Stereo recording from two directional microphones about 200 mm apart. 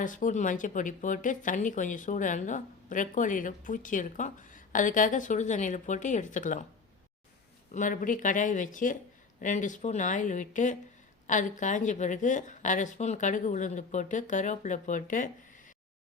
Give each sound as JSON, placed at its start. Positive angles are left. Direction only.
{"t": 0.0, "sound": "a woman's voice", "side_deg": 40}
{"t": 7.7, "sound": "a woman's voice", "side_deg": 40}